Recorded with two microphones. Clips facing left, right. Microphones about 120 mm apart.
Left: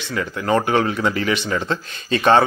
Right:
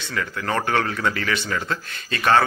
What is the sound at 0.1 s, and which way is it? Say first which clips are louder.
A man's voice: left 5 dB; 20° left (ahead or behind).